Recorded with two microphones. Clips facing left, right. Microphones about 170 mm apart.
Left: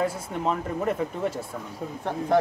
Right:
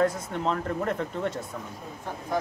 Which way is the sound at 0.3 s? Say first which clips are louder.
Left 1 dB; 5° left (ahead or behind).